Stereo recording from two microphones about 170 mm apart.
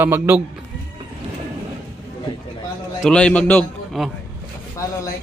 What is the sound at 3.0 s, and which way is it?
A man's voice, 5° left (ahead or behind).